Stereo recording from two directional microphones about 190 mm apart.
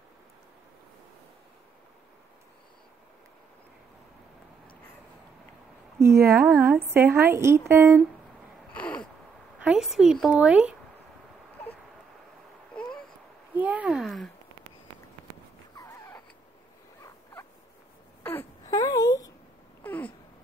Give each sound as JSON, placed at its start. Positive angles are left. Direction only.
{"t": 5.9, "sound": "a woman's voice", "side_deg": -15}
{"t": 8.7, "sound": "caw", "side_deg": 5}
{"t": 9.6, "sound": "a woman's voice", "side_deg": -5}
{"t": 13.6, "sound": "a sound", "side_deg": -10}
{"t": 15.7, "sound": "a sound", "side_deg": 15}
{"t": 17.0, "sound": "rodents", "side_deg": 15}
{"t": 18.2, "sound": "wail", "side_deg": 10}
{"t": 19.8, "sound": "babbling", "side_deg": 10}